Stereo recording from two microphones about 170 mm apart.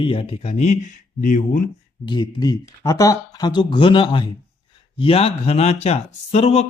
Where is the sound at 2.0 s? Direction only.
25° left (ahead or behind).